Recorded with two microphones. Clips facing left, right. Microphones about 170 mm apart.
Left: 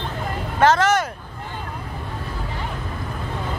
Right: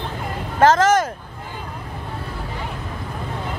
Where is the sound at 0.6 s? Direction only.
45° right (ahead or behind).